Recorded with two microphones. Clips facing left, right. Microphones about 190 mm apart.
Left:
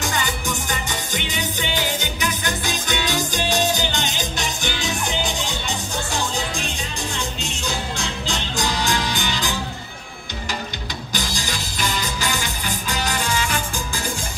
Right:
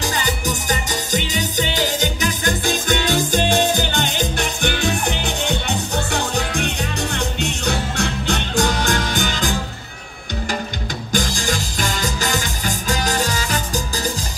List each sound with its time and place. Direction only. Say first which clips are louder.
0.7 s music: right 5 dB; 40° right (ahead or behind)
11.1 s music: right 7 dB; 50° right (ahead or behind)